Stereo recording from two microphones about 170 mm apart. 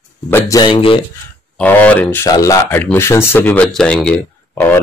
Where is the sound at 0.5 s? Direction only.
30° left (ahead or behind).